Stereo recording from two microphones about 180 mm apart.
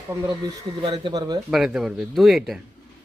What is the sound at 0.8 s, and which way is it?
Speech, 25° right (ahead or behind).